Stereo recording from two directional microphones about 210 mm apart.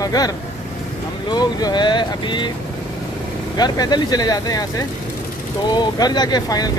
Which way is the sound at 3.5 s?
20° left (ahead or behind).